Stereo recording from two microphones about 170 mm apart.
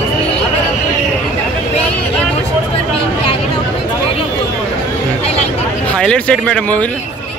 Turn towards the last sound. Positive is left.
turn(degrees=5)  # may be behind; listen again after turning